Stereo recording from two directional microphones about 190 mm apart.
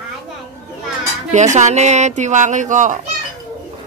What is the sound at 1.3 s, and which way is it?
Fowl, 40° right (ahead or behind).